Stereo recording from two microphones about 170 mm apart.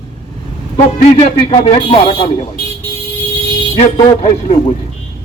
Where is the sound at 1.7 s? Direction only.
35° left (ahead or behind).